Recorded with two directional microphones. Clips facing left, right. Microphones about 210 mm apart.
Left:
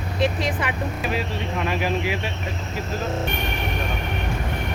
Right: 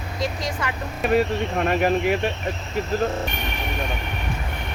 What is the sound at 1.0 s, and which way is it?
Speech, 50° right (ahead or behind).